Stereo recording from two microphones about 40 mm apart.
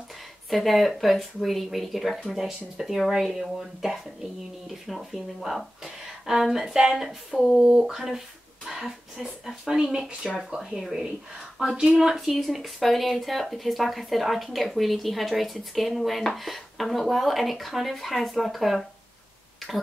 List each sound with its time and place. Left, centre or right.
0.5 s speech: centre
7.5 s speech: centre
12.3 s speech: centre
19.6 s tick-tock: centre